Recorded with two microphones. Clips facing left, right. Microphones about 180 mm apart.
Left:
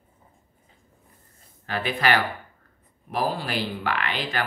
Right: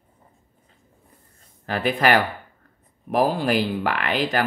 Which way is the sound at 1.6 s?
45° right (ahead or behind).